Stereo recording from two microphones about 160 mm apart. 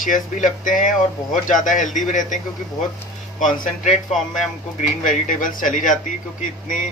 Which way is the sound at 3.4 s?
50° left (ahead or behind).